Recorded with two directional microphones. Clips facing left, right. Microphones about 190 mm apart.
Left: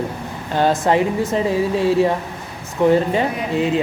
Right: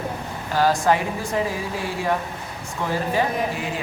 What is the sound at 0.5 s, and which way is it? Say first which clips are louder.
Speech: left 3 dB; 25° left (ahead or behind).